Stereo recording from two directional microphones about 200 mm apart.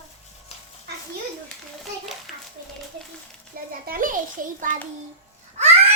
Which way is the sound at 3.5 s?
45° right (ahead or behind).